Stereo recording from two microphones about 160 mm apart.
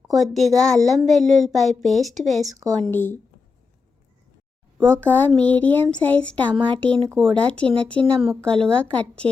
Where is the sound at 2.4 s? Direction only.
20° right (ahead or behind).